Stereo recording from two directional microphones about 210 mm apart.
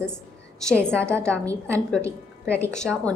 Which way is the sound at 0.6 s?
5° left (ahead or behind).